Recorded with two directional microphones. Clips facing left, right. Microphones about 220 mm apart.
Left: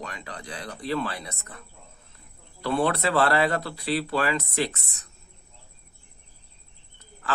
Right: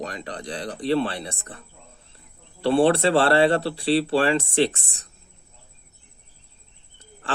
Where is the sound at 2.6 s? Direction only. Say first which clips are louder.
Right 6 dB; 30° right (ahead or behind).